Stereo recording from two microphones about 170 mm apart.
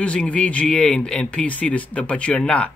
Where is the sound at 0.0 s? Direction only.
5° left (ahead or behind).